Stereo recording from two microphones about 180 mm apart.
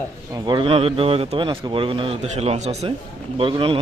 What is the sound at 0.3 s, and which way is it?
A man's voice, 25° right (ahead or behind).